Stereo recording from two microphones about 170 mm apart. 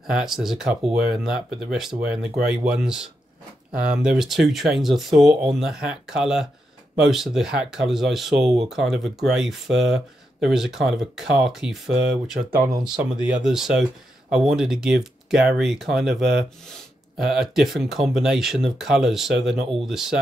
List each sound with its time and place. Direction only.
0.2 s speech: centre (ahead or behind)
12.5 s speech: 20° right (ahead or behind)
12.9 s speech: 5° right (ahead or behind)